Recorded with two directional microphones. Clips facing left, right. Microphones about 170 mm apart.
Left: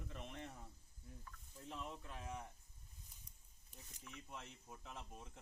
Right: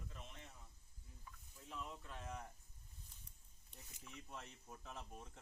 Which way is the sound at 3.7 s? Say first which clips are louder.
Left 1 dB; centre (ahead or behind).